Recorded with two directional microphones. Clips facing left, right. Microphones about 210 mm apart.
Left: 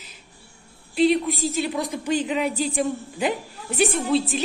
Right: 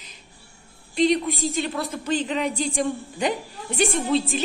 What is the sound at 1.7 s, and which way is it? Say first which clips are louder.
Speech: left 1 dB; 15° left (ahead or behind).